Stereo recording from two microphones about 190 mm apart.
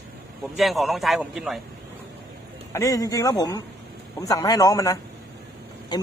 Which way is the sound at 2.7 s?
15° left (ahead or behind).